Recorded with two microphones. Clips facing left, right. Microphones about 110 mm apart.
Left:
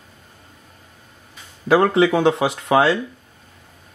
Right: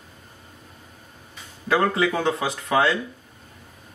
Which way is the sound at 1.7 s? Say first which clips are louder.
Left 6 dB; 30° left (ahead or behind).